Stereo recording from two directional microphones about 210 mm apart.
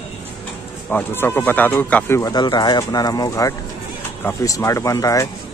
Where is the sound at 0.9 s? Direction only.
10° left (ahead or behind).